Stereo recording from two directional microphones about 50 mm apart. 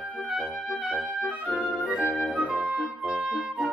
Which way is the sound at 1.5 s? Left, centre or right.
Centre.